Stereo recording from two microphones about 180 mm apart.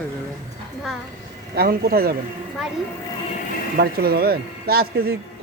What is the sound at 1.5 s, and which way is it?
Speech, 60° right (ahead or behind).